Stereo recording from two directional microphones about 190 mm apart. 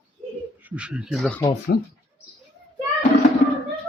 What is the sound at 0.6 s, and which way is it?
Speech, 5° right (ahead or behind).